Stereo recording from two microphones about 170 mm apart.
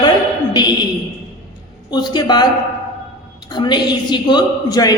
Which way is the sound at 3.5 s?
25° left (ahead or behind).